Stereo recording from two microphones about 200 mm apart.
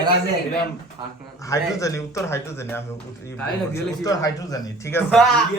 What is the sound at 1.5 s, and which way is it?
Speech, 15° left (ahead or behind).